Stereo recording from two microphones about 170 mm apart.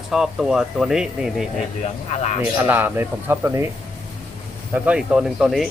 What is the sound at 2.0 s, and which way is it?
Speech, 40° left (ahead or behind).